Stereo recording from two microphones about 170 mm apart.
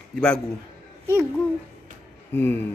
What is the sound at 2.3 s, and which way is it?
Speech, 10° left (ahead or behind).